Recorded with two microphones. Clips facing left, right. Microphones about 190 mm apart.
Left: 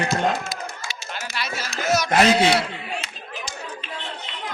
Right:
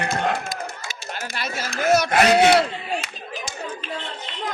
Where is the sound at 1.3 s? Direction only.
50° right (ahead or behind).